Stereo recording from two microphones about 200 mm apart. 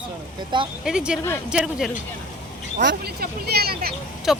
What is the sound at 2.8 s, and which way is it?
Speech, 50° right (ahead or behind).